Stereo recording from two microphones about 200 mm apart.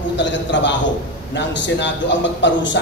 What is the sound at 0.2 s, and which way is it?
A man's voice, 65° left (ahead or behind).